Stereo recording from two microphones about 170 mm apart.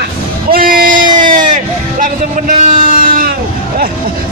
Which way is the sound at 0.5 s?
60° right (ahead or behind).